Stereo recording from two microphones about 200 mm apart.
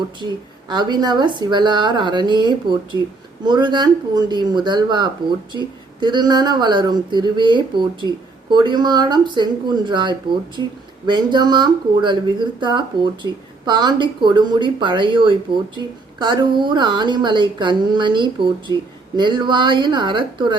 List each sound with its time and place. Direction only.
0.7 s speech: 20° right (ahead or behind)